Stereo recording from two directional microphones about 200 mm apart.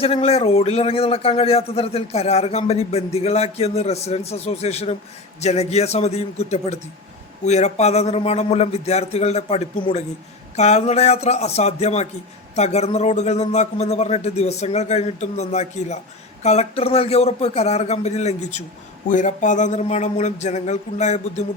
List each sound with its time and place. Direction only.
0.0 s a man's voice: 30° left (ahead or behind)